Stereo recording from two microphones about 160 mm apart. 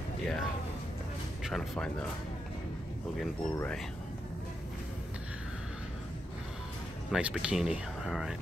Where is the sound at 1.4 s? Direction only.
Centre (ahead or behind).